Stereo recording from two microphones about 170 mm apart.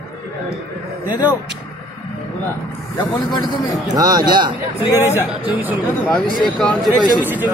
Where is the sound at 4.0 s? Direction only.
20° right (ahead or behind).